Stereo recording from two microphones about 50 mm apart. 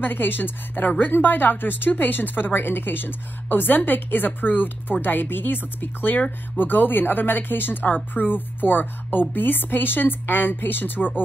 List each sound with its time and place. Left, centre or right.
0.0 s a woman's voice: left